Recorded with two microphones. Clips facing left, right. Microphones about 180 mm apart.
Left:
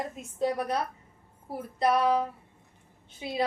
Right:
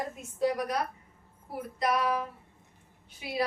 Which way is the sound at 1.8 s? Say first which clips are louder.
Left 4 dB; 30° left (ahead or behind).